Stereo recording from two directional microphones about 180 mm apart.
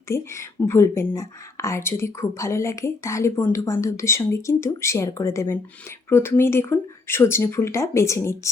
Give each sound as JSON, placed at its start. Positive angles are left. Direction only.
{"t": 0.1, "sound": "speech", "side_deg": 15}